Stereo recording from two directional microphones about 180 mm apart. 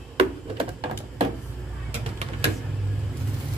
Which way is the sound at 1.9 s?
40° right (ahead or behind).